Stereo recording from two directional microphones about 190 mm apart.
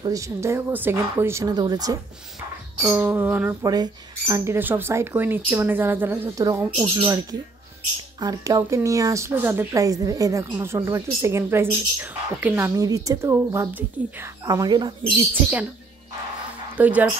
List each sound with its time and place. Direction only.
0.0 s speech: 15° right (ahead or behind)
8.2 s speech: 20° right (ahead or behind)
16.7 s speech: 10° right (ahead or behind)